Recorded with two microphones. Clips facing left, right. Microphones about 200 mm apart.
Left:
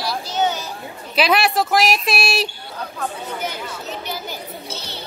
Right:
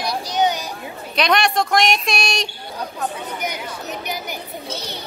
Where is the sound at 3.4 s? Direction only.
15° right (ahead or behind).